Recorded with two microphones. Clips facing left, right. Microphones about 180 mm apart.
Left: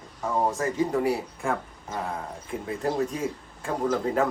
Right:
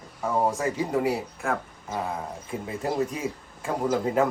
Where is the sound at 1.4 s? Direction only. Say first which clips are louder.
Even; centre (ahead or behind).